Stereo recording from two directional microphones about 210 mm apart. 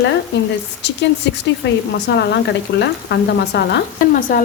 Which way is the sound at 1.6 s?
55° left (ahead or behind).